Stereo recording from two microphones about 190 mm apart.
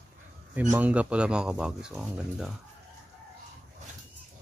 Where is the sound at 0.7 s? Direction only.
10° right (ahead or behind).